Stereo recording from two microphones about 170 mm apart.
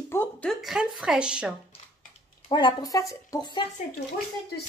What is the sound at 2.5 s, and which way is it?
Speech, 25° left (ahead or behind).